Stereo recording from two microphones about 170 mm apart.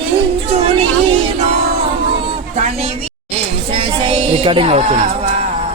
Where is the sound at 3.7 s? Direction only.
35° right (ahead or behind).